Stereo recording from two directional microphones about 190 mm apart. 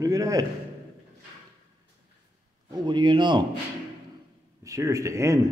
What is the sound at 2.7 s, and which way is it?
Speech, 25° right (ahead or behind).